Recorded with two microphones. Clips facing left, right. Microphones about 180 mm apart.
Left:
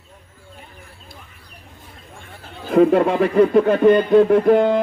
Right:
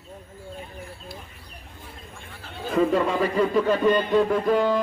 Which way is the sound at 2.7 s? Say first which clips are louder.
Left 7 dB; 60° left (ahead or behind).